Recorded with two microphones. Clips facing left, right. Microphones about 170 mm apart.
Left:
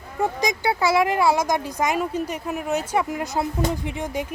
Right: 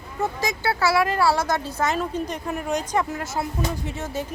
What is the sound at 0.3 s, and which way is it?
Speech, 20° left (ahead or behind).